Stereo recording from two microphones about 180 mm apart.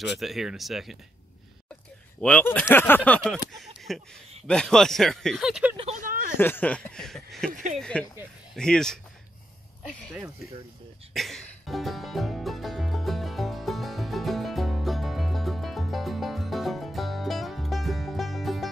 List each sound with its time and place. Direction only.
0.2 s speech: centre (ahead or behind)
2.1 s speech: 5° left (ahead or behind)
5.9 s speech: 50° right (ahead or behind)
6.3 s speech: 10° left (ahead or behind)
11.1 s music: centre (ahead or behind)